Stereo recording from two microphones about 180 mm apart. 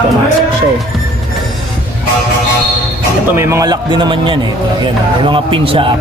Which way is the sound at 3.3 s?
15° right (ahead or behind).